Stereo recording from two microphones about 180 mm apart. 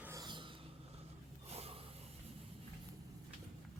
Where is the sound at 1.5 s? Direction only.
35° right (ahead or behind).